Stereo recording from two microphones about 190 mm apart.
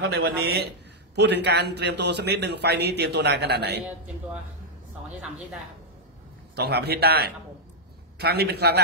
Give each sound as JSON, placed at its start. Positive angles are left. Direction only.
{"t": 0.0, "sound": "a man's voice", "side_deg": -60}
{"t": 6.5, "sound": "a man's voice", "side_deg": -60}